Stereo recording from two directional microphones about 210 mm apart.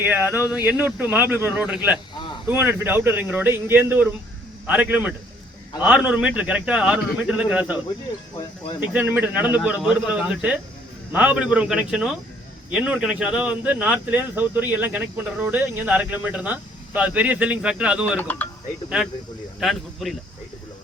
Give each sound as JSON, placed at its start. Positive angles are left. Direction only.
{"t": 0.0, "sound": "speech", "side_deg": -10}
{"t": 2.1, "sound": "a sound", "side_deg": 25}
{"t": 2.5, "sound": "a man's voice", "side_deg": -10}
{"t": 8.8, "sound": "a man's voice", "side_deg": -10}
{"t": 18.2, "sound": "speech", "side_deg": 10}
{"t": 19.5, "sound": "a man's voice", "side_deg": 0}